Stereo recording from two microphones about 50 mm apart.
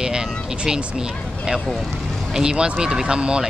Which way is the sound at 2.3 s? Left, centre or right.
Centre.